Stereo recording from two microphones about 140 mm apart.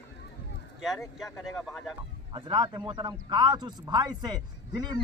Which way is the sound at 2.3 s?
35° right (ahead or behind).